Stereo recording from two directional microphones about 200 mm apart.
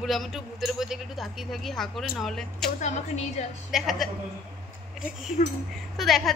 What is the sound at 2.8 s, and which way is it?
Speech, 35° left (ahead or behind).